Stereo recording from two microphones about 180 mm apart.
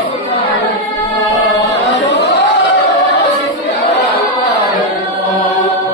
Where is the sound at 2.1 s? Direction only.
60° left (ahead or behind).